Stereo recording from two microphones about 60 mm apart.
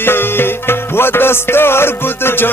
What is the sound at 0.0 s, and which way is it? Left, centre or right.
Music, left.